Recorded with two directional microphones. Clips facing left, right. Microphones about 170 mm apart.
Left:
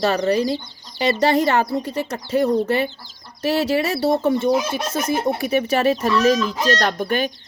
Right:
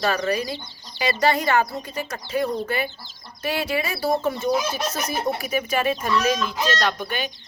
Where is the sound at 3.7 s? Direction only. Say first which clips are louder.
Left 5 dB; 30° left (ahead or behind).